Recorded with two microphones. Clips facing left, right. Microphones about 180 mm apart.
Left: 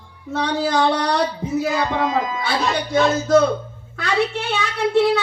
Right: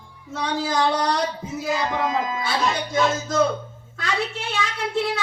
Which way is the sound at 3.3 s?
65° left (ahead or behind).